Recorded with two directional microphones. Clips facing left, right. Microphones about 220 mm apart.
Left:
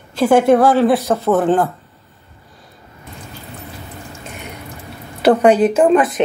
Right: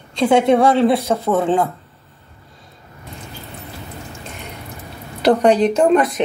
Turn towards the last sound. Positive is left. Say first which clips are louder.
# left 2 dB
turn(degrees=0)  # may be behind; listen again after turning